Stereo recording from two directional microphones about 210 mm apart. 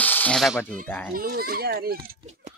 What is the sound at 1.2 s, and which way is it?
Speech, 45° right (ahead or behind).